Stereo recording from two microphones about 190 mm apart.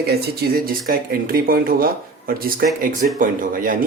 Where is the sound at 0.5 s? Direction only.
50° right (ahead or behind).